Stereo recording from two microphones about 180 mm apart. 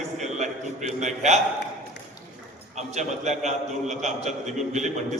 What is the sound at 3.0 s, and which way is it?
A man's voice, 40° right (ahead or behind).